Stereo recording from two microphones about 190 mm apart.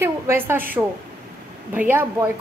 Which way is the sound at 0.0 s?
10° right (ahead or behind).